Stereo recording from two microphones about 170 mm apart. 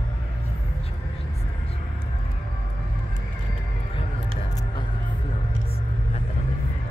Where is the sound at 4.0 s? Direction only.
25° left (ahead or behind).